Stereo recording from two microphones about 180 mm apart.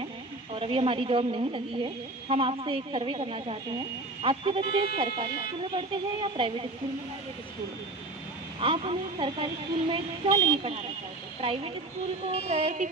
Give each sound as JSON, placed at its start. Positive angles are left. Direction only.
{"t": 0.6, "sound": "a woman's voice", "side_deg": -30}
{"t": 8.5, "sound": "speech", "side_deg": -30}
{"t": 12.3, "sound": "a woman's voice", "side_deg": -35}